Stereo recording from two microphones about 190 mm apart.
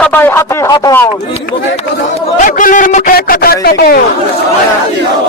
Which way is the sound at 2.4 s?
45° left (ahead or behind).